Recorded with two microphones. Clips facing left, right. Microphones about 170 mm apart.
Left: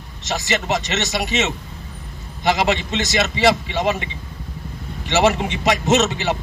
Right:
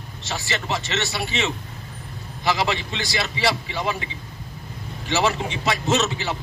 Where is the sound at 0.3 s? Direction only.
20° left (ahead or behind).